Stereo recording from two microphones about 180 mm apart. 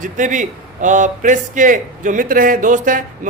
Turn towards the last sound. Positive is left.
turn(degrees=-45)  # may be behind; listen again after turning